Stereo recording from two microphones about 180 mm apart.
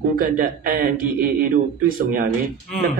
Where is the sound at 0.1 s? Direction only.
50° right (ahead or behind).